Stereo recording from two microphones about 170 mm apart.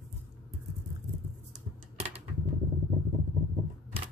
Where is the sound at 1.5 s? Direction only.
35° right (ahead or behind).